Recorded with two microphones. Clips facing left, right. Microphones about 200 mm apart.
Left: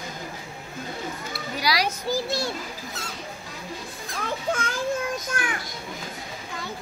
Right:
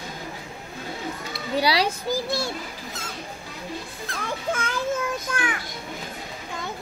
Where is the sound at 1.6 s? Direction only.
30° right (ahead or behind).